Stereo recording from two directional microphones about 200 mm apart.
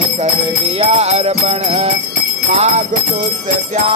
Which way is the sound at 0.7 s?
30° right (ahead or behind).